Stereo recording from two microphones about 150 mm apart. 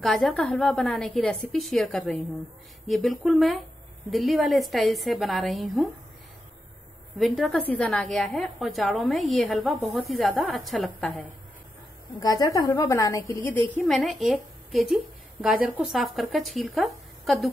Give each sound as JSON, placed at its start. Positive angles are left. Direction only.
{"t": 0.0, "sound": "a woman's voice", "side_deg": 0}
{"t": 7.2, "sound": "a woman's voice", "side_deg": 0}
{"t": 12.2, "sound": "a woman's voice", "side_deg": 25}
{"t": 13.8, "sound": "a woman's voice", "side_deg": 0}